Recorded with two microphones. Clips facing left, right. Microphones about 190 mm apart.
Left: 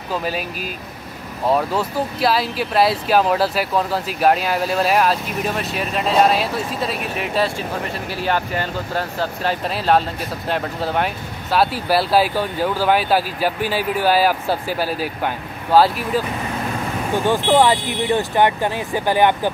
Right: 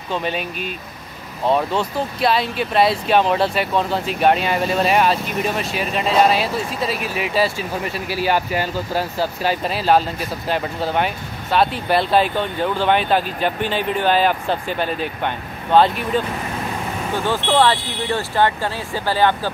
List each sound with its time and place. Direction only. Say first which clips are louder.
0.1 s speech: even; 5° left (ahead or behind)
17.1 s speech: left 3 dB; 15° left (ahead or behind)